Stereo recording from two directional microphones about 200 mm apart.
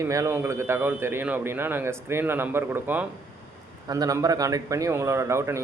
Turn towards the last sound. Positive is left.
turn(degrees=-15)  # may be behind; listen again after turning